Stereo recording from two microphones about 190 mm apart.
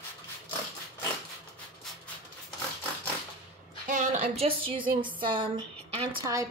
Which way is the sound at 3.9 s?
40° right (ahead or behind).